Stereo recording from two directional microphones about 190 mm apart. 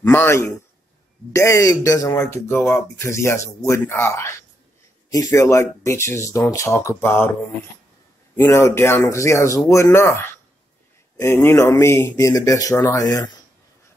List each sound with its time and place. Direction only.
0.0 s speech: 15° left (ahead or behind)
8.4 s speech: 15° left (ahead or behind)